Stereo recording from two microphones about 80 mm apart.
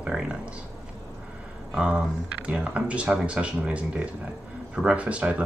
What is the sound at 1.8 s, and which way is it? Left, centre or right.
Speech, centre.